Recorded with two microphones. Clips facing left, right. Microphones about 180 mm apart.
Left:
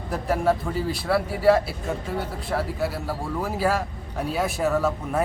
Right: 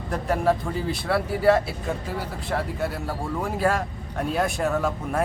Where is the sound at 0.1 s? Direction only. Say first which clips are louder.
Even; centre (ahead or behind).